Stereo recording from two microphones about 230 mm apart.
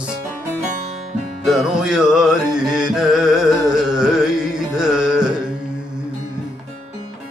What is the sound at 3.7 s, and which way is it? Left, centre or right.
Carnatic music, centre.